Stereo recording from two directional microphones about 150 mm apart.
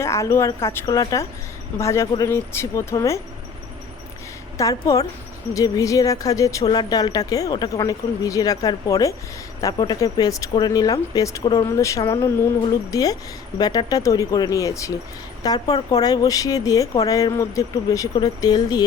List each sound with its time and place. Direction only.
0.0 s speech: 20° left (ahead or behind)
4.5 s speech: 25° left (ahead or behind)